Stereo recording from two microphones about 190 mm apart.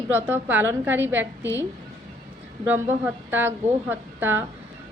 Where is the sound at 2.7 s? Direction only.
10° right (ahead or behind).